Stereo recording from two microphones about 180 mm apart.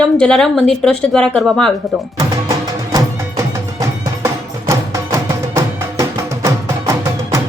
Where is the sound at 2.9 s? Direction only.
20° right (ahead or behind).